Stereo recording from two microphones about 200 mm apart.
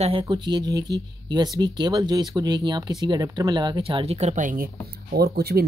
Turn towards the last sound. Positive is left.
turn(degrees=-50)  # may be behind; listen again after turning